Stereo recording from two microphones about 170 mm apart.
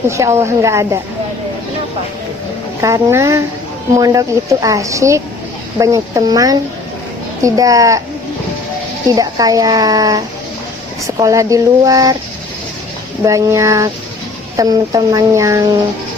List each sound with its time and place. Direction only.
0.1 s a woman's voice: 15° right (ahead or behind)
2.8 s a woman's voice: 15° right (ahead or behind)
9.0 s speech: 20° right (ahead or behind)
13.2 s a woman's voice: 20° right (ahead or behind)